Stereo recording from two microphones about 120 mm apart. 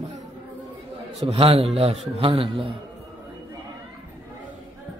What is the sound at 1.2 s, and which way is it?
A man's voice, 60° right (ahead or behind).